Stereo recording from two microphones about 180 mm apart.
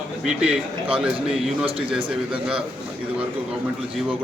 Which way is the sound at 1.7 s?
30° right (ahead or behind).